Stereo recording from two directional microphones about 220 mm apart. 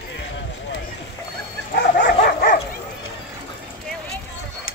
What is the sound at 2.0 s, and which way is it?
Dog, 45° left (ahead or behind).